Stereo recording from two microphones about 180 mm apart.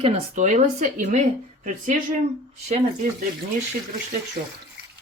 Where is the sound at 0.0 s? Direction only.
40° right (ahead or behind).